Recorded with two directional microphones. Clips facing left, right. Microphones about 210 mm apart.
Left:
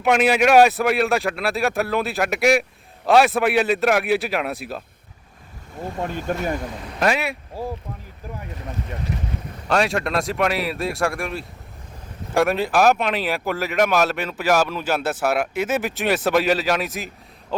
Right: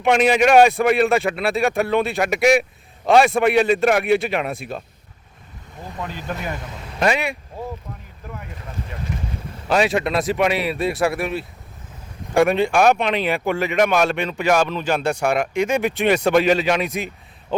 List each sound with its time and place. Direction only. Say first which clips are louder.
0.0 s speech: right 1 dB; 5° left (ahead or behind)
6.0 s speech: left 4 dB; 45° left (ahead or behind)
7.0 s speech: right 1 dB; centre (ahead or behind)
9.6 s speech: right 2 dB; centre (ahead or behind)